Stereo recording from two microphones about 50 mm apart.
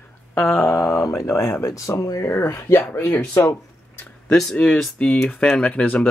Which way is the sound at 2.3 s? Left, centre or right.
Left.